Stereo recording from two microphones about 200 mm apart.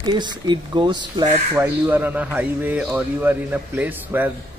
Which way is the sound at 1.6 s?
10° right (ahead or behind).